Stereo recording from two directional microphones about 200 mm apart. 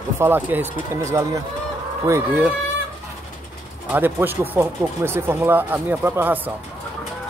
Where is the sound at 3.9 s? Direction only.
10° right (ahead or behind).